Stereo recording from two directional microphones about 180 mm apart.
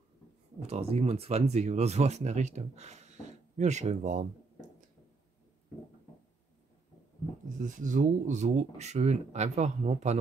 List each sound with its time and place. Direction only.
0.6 s speech: 35° right (ahead or behind)
7.5 s speech: 45° right (ahead or behind)